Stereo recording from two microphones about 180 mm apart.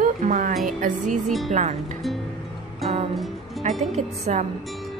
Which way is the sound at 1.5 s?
40° right (ahead or behind).